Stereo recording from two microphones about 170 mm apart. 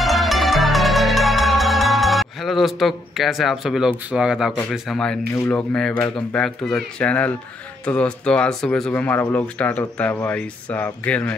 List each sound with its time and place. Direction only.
0.0 s music: centre (ahead or behind)
4.8 s speech: 5° left (ahead or behind)